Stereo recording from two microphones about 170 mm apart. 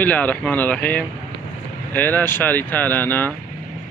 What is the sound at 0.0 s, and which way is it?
Speech, 10° left (ahead or behind).